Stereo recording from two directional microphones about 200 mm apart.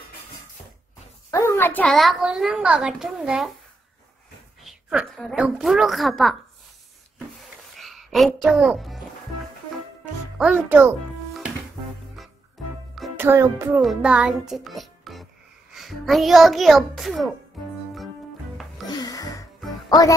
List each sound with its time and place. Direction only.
1.3 s a child's voice: 10° left (ahead or behind)
4.6 s a child's voice: centre (ahead or behind)
7.7 s a sound: centre (ahead or behind)
10.4 s a child's voice: 5° right (ahead or behind)
13.2 s a child's voice: 15° right (ahead or behind)
18.9 s music: 20° left (ahead or behind)